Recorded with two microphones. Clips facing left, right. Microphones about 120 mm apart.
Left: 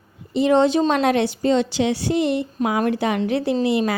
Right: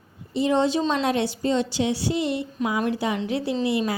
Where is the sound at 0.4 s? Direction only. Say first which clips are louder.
Left 5 dB; 65° left (ahead or behind).